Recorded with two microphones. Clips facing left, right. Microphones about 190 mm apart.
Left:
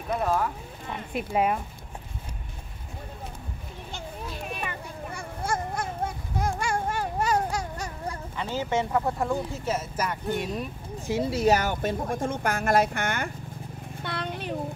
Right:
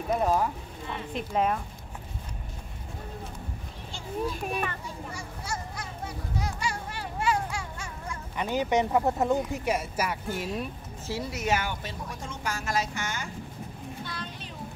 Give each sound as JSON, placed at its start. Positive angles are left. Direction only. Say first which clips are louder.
{"t": 0.2, "sound": "speech", "louder": "even", "side_deg": -15}
{"t": 1.1, "sound": "speech", "louder": "left 2 dB", "side_deg": 10}
{"t": 4.8, "sound": "children playing", "louder": "left 2 dB", "side_deg": 55}
{"t": 8.4, "sound": "speech", "louder": "right 2 dB", "side_deg": -15}
{"t": 11.1, "sound": "speech", "louder": "left 7 dB", "side_deg": 25}
{"t": 14.0, "sound": "a sound", "louder": "left 7 dB", "side_deg": 60}